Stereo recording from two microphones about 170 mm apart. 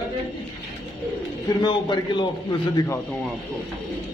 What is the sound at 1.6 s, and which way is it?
A man's voice, 25° left (ahead or behind).